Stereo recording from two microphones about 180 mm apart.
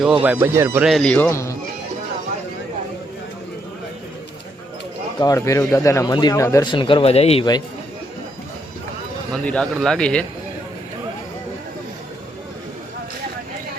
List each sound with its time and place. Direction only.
0.0 s speech: 5° right (ahead or behind)
0.9 s speech: 5° left (ahead or behind)
5.2 s speech: 20° left (ahead or behind); by 7.4 s 35° left (ahead or behind)
9.3 s speech: 5° left (ahead or behind)